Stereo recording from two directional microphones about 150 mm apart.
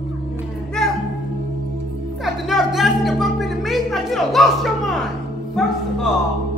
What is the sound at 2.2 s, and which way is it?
Music, centre (ahead or behind).